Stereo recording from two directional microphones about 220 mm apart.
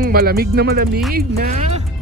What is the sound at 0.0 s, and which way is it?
Speech, 45° right (ahead or behind).